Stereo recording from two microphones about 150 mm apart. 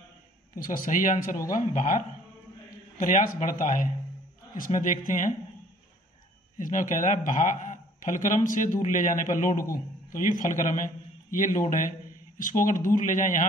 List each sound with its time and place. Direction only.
0.6 s a man's voice: 65° left (ahead or behind)
6.6 s a man's voice: 60° left (ahead or behind)